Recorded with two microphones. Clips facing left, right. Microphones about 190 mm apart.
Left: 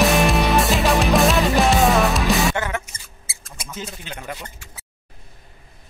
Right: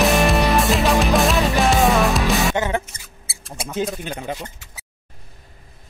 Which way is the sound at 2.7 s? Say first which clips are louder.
Right 5 dB; 35° right (ahead or behind).